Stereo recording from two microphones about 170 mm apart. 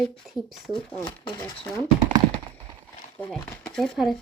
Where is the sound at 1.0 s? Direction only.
20° left (ahead or behind).